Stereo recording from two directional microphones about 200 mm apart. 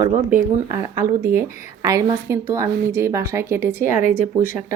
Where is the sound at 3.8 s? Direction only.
40° left (ahead or behind).